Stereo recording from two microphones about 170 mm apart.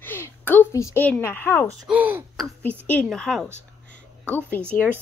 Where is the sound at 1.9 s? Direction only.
10° right (ahead or behind).